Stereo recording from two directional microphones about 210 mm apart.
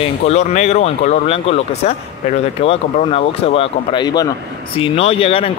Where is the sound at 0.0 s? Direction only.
30° left (ahead or behind).